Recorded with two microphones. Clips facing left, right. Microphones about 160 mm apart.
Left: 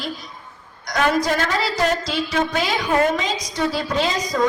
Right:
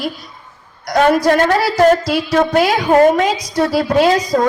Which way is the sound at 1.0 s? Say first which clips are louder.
Right 7 dB; 60° right (ahead or behind).